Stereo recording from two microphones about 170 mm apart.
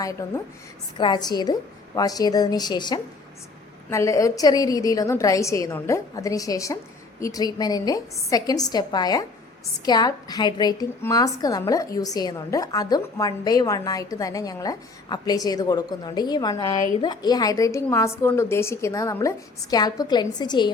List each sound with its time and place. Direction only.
0.0 s a woman's voice: 20° left (ahead or behind)